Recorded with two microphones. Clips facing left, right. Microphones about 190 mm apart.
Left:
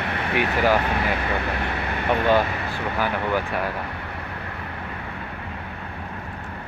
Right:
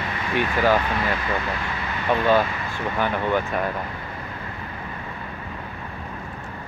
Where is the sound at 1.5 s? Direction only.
65° left (ahead or behind).